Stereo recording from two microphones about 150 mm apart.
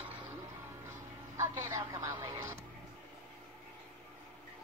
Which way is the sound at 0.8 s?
20° right (ahead or behind).